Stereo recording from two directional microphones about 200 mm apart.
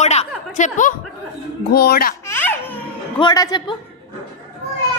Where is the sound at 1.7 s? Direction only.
50° left (ahead or behind).